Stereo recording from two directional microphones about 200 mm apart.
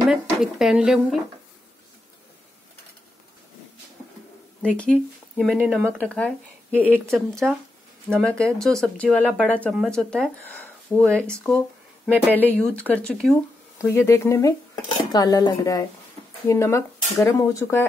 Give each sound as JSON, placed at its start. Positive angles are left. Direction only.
{"t": 0.0, "sound": "speech", "side_deg": 0}
{"t": 4.7, "sound": "speech", "side_deg": 5}
{"t": 12.3, "sound": "speech", "side_deg": 10}